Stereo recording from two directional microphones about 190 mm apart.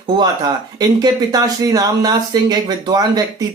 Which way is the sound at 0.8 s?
20° right (ahead or behind).